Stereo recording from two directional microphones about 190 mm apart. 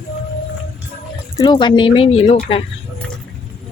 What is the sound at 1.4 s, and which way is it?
Speech, 25° left (ahead or behind).